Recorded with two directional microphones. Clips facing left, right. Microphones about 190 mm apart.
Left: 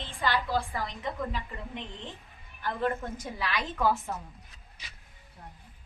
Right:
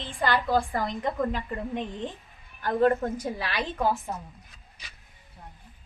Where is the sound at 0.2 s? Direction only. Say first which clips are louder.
Right 4 dB; 50° right (ahead or behind).